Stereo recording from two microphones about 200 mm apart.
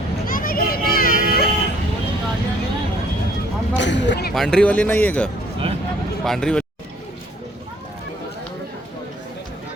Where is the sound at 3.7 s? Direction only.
65° left (ahead or behind).